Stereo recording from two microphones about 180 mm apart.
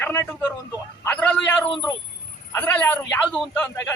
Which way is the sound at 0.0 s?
15° left (ahead or behind).